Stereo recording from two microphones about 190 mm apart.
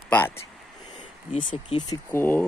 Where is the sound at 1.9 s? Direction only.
10° left (ahead or behind).